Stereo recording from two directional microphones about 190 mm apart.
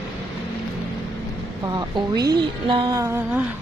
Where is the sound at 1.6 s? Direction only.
20° right (ahead or behind).